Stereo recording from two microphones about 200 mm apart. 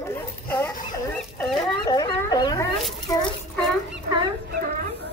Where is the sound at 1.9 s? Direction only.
20° left (ahead or behind).